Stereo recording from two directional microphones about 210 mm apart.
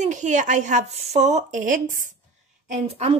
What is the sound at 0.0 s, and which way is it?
Speech, 35° right (ahead or behind).